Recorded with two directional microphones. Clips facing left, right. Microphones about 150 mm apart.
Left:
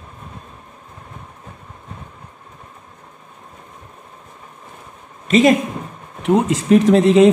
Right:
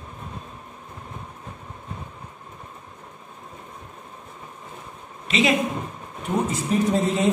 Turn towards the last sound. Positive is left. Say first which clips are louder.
# left 10 dB
turn(degrees=85)